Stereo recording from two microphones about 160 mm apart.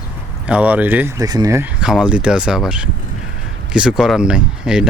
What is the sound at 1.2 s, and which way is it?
Speech, 25° right (ahead or behind).